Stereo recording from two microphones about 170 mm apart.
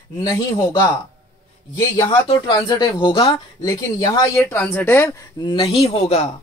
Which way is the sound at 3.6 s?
15° left (ahead or behind).